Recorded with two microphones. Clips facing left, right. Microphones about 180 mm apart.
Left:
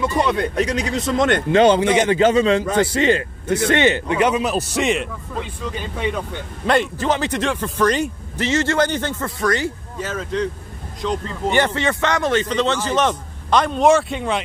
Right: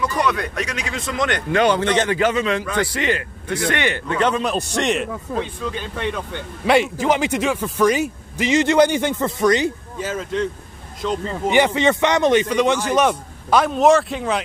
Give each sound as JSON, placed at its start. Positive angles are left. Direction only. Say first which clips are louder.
{"t": 0.0, "sound": "a man's voice", "louder": "left 2 dB", "side_deg": 25}
{"t": 1.1, "sound": "speech", "louder": "left 5 dB", "side_deg": 50}
{"t": 1.5, "sound": "a man's voice", "louder": "left 4 dB", "side_deg": 25}
{"t": 1.8, "sound": "speech", "louder": "left 2 dB", "side_deg": 10}
{"t": 2.0, "sound": "a man's voice", "louder": "left 4 dB", "side_deg": 25}
{"t": 4.2, "sound": "speech", "louder": "even", "side_deg": 10}
{"t": 6.6, "sound": "a man's voice", "louder": "right 2 dB", "side_deg": -10}
{"t": 11.0, "sound": "a man's voice", "louder": "right 1 dB", "side_deg": -5}